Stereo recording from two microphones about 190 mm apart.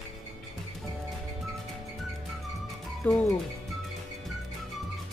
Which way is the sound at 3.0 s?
10° left (ahead or behind).